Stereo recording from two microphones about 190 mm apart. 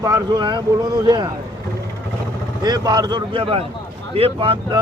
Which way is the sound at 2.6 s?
20° right (ahead or behind).